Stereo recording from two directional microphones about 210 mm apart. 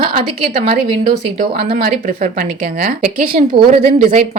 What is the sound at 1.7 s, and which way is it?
Speech, 45° right (ahead or behind).